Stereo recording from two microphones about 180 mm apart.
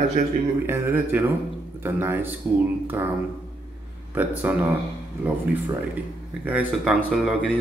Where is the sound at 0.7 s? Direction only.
10° right (ahead or behind).